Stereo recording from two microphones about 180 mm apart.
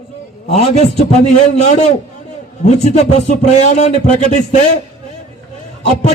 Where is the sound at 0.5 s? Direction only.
35° left (ahead or behind).